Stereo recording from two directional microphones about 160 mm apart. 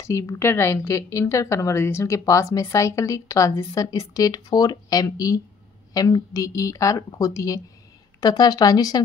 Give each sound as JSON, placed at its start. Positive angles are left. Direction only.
{"t": 0.0, "sound": "a woman's voice", "side_deg": 20}